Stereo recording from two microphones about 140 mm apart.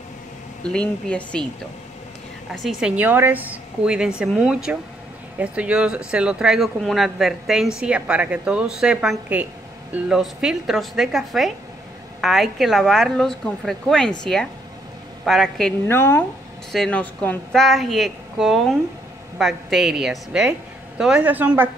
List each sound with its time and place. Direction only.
0.7 s speech: 5° left (ahead or behind)
2.5 s a woman's voice: centre (ahead or behind)
15.9 s speech: 15° left (ahead or behind)
16.7 s speech: 5° left (ahead or behind)
17.6 s a woman's voice: centre (ahead or behind)